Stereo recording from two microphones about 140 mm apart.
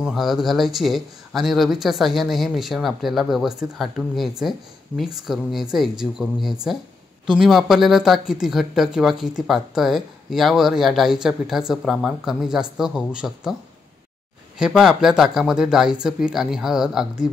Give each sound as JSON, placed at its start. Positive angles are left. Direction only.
{"t": 0.0, "sound": "speech", "side_deg": 0}
{"t": 14.6, "sound": "speech", "side_deg": -5}